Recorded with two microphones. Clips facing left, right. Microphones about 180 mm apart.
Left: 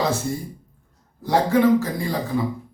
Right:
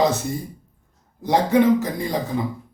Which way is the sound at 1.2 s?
20° right (ahead or behind).